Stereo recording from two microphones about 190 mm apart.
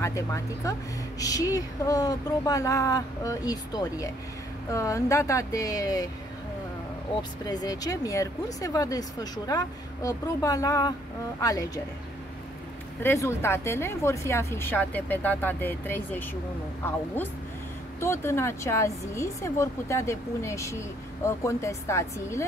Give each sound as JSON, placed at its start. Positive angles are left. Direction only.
{"t": 0.0, "sound": "speech", "side_deg": 15}
{"t": 7.2, "sound": "speech", "side_deg": 20}
{"t": 13.0, "sound": "speech", "side_deg": 15}
{"t": 18.0, "sound": "speech", "side_deg": 15}